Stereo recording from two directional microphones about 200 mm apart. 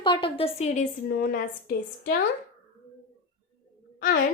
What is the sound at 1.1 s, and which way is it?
A woman's voice, 50° left (ahead or behind).